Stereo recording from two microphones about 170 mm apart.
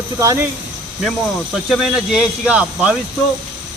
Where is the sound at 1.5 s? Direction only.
Centre (ahead or behind).